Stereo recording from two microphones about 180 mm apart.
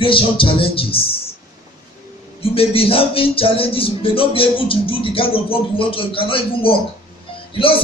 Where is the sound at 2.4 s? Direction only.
30° left (ahead or behind).